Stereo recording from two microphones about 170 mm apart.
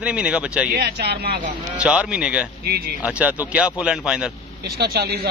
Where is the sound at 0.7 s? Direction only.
75° right (ahead or behind).